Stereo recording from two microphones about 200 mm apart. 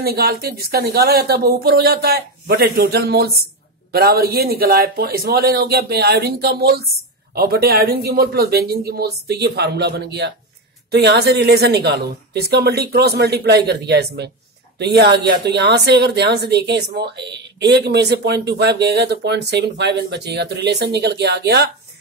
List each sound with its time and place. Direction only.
0.0 s a woman's voice: 50° right (ahead or behind)